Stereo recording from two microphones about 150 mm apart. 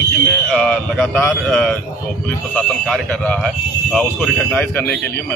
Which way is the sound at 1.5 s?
5° left (ahead or behind).